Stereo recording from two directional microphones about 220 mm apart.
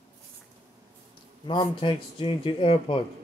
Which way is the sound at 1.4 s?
25° left (ahead or behind).